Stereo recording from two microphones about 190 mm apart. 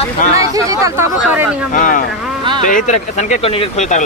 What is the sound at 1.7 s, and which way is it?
Speech, 45° left (ahead or behind).